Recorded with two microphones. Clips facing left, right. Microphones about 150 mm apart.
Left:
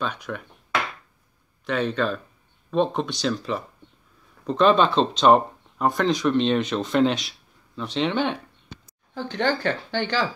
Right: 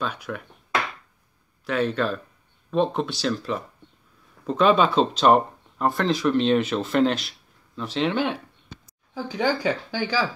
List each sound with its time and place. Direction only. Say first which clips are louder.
0.0 s speech: even; 5° right (ahead or behind)
1.7 s speech: even; 5° right (ahead or behind)